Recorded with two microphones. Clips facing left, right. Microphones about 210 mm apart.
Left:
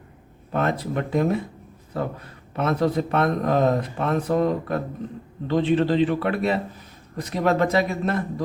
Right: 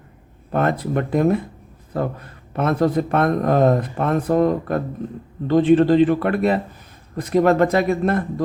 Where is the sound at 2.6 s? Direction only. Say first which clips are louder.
Right 3 dB; 50° right (ahead or behind).